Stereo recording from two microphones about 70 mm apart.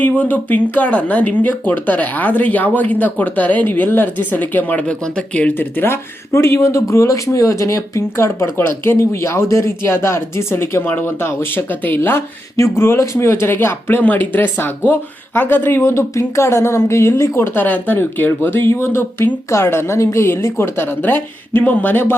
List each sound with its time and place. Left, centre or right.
0.0 s speech: left
5.5 s speech: left
12.5 s speech: left
15.8 s speech: left